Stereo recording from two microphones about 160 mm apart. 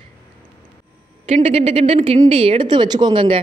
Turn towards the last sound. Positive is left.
turn(degrees=-30)  # may be behind; listen again after turning